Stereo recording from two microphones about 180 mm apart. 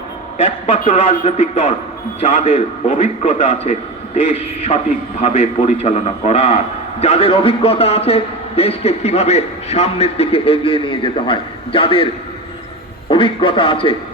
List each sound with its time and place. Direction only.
0.3 s a man's voice: 35° left (ahead or behind)
13.1 s a man's voice: 30° left (ahead or behind)